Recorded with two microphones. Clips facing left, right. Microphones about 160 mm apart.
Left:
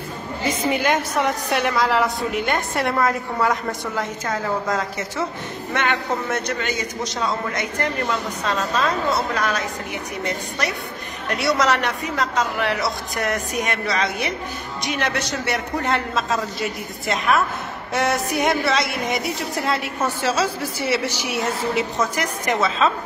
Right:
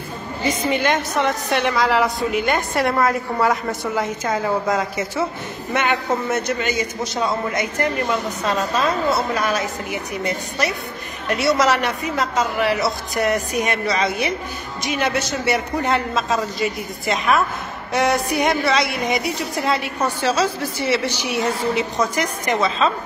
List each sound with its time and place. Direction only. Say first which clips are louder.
0.5 s a woman's voice: right 1 dB; 10° left (ahead or behind); by 9.6 s 10° right (ahead or behind)
11.2 s a woman's voice: right 2 dB; centre (ahead or behind)